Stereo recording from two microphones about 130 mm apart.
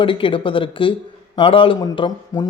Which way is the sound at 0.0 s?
40° left (ahead or behind).